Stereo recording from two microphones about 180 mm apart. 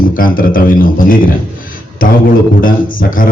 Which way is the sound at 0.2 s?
50° left (ahead or behind).